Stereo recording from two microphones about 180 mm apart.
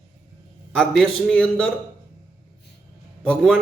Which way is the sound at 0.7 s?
5° left (ahead or behind).